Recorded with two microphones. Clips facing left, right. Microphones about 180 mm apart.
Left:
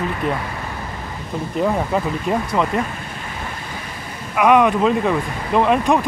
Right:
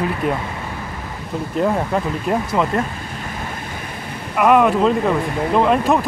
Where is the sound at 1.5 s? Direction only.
Centre (ahead or behind).